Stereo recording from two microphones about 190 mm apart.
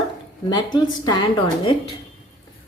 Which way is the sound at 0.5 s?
20° left (ahead or behind).